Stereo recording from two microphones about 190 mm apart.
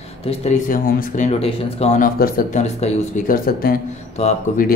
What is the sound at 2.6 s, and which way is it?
Speech, 40° left (ahead or behind).